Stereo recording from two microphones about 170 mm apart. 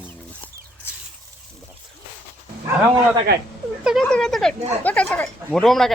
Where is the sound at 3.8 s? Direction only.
5° left (ahead or behind).